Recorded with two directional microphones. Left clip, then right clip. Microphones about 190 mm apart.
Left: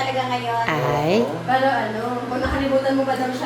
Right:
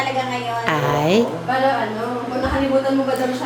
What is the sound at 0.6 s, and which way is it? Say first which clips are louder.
Speech: right 4 dB; 20° right (ahead or behind).